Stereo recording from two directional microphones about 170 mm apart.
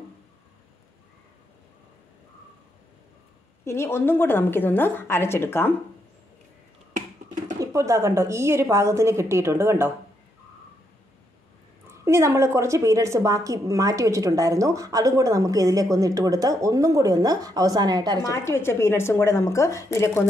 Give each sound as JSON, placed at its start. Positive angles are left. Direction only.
{"t": 3.6, "sound": "a woman's voice", "side_deg": 15}
{"t": 7.6, "sound": "a woman's voice", "side_deg": -20}
{"t": 11.9, "sound": "a woman's voice", "side_deg": -15}
{"t": 18.2, "sound": "a woman's voice", "side_deg": 15}